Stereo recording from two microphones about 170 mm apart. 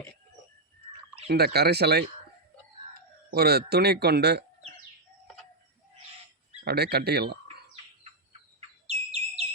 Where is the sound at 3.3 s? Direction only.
65° right (ahead or behind).